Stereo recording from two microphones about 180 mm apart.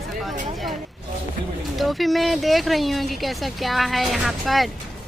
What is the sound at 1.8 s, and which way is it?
Speech, centre (ahead or behind).